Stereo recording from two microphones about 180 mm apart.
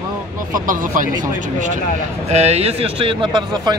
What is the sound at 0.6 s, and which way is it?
Speech, 50° right (ahead or behind).